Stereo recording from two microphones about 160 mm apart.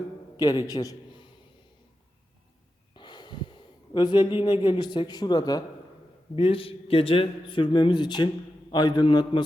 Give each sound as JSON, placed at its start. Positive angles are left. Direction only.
{"t": 0.3, "sound": "a man's voice", "side_deg": 25}
{"t": 2.9, "sound": "speech", "side_deg": 30}
{"t": 6.3, "sound": "a man's voice", "side_deg": 35}